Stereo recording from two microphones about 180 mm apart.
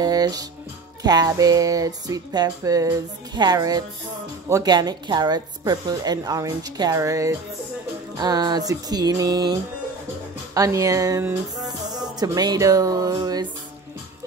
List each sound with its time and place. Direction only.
0.0 s music: 20° right (ahead or behind)
1.0 s a woman's voice: 20° right (ahead or behind)
11.6 s music: 20° right (ahead or behind)